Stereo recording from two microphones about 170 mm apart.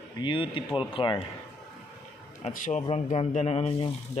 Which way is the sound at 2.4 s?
45° left (ahead or behind).